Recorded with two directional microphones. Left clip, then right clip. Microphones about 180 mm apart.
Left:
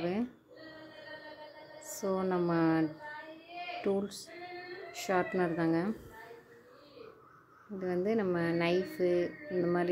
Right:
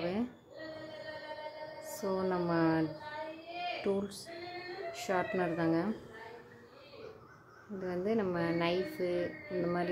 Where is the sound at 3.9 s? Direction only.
25° left (ahead or behind).